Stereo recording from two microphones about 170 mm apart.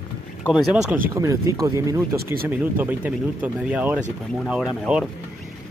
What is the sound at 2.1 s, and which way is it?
Speech, 60° right (ahead or behind).